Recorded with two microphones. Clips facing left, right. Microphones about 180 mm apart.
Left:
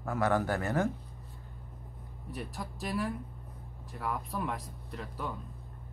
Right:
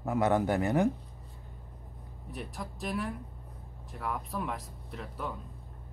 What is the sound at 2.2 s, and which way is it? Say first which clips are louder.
Speech: even; centre (ahead or behind).